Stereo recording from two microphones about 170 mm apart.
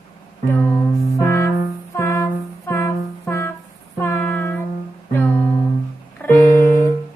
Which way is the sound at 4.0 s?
15° left (ahead or behind).